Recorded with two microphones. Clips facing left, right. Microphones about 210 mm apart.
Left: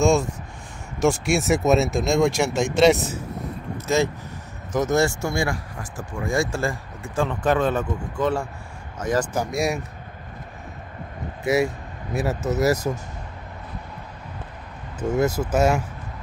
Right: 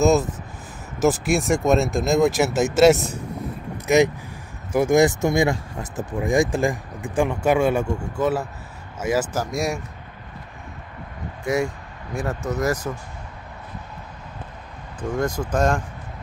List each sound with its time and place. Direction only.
0.0 s speech: 5° right (ahead or behind)
3.8 s speech: 15° right (ahead or behind); by 9.8 s centre (ahead or behind)
11.4 s speech: 5° left (ahead or behind)
15.1 s speech: 5° left (ahead or behind)